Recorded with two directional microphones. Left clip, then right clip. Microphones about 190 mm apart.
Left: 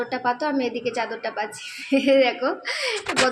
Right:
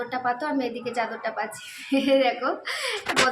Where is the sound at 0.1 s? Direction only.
15° left (ahead or behind).